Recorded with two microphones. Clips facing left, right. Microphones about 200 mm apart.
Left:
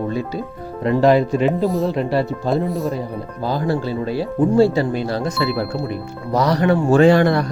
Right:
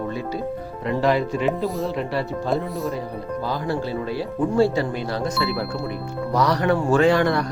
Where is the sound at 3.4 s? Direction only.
35° left (ahead or behind).